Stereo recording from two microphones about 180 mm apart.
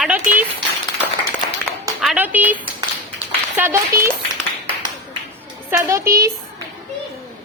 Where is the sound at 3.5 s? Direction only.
15° right (ahead or behind).